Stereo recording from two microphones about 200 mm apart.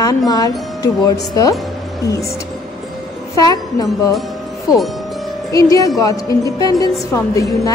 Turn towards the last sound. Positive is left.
turn(degrees=15)  # may be behind; listen again after turning